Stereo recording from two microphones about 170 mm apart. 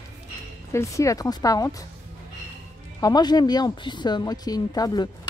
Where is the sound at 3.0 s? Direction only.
25° left (ahead or behind).